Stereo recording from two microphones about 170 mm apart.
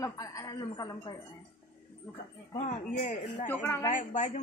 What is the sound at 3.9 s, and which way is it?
Speech, 45° left (ahead or behind).